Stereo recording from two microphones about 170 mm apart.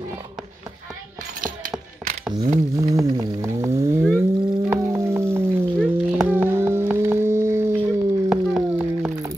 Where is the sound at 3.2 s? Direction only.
20° right (ahead or behind).